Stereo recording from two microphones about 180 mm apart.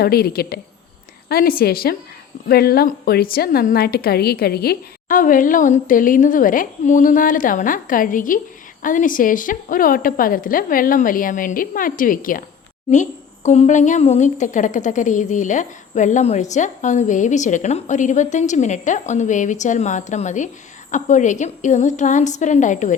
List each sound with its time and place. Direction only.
0.0 s a woman's voice: 60° left (ahead or behind); by 23.0 s 45° left (ahead or behind)